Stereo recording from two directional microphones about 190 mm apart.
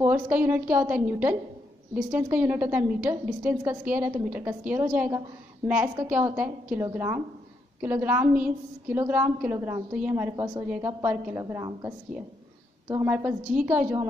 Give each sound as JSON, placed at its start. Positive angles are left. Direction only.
{"t": 0.0, "sound": "a woman's voice", "side_deg": -10}
{"t": 10.3, "sound": "a woman's voice", "side_deg": -20}
{"t": 10.9, "sound": "a woman's voice", "side_deg": -10}